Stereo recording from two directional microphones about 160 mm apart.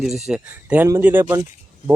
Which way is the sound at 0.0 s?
5° right (ahead or behind).